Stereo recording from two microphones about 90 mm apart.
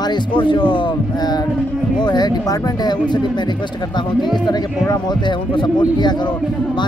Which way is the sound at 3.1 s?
55° left (ahead or behind).